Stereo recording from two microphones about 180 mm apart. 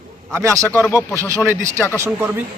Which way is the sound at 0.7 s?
10° left (ahead or behind).